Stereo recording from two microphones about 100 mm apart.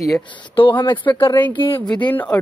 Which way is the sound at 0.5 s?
60° left (ahead or behind).